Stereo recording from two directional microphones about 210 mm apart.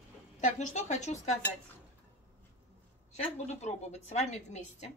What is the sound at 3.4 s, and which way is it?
Speech, 30° left (ahead or behind).